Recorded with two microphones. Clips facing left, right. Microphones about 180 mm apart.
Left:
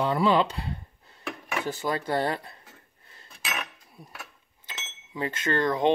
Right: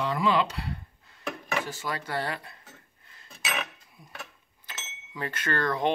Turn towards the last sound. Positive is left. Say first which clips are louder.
# left 3 dB
turn(degrees=20)  # may be behind; listen again after turning